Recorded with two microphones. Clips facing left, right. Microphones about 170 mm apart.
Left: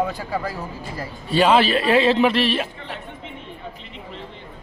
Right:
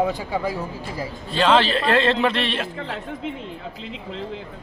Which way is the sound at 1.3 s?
10° left (ahead or behind).